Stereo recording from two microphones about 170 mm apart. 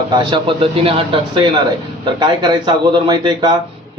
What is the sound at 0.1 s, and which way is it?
A man's voice, 25° right (ahead or behind).